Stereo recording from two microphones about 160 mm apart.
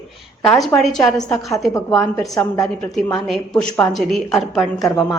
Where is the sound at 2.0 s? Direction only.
20° left (ahead or behind).